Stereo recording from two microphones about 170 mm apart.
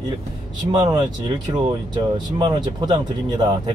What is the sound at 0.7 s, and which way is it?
Speech, 25° right (ahead or behind).